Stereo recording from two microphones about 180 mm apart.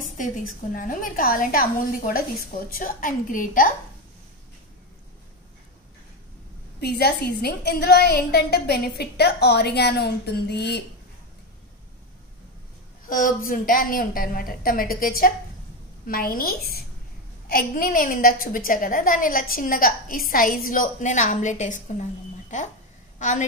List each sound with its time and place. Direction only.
0.2 s a woman's voice: 45° left (ahead or behind)
6.8 s a woman's voice: 65° left (ahead or behind)
13.0 s a woman's voice: 50° left (ahead or behind)
23.1 s a sound: 45° left (ahead or behind)